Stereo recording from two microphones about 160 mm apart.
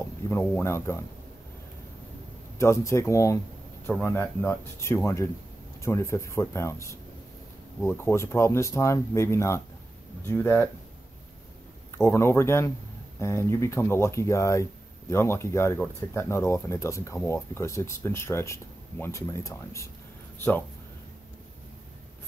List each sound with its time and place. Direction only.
0.3 s speech: 15° left (ahead or behind)
2.6 s speech: 15° left (ahead or behind)
12.0 s a man's voice: 15° left (ahead or behind)